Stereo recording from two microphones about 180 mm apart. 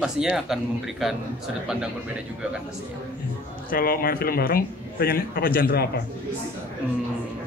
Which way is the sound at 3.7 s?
55° left (ahead or behind).